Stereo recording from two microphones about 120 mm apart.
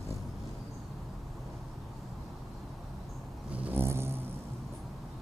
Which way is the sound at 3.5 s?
10° right (ahead or behind).